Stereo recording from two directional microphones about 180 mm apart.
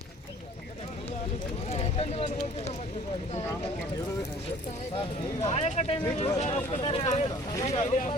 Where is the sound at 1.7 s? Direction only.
35° left (ahead or behind).